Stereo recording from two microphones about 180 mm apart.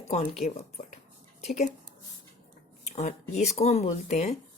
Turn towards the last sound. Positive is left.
turn(degrees=40)  # may be behind; listen again after turning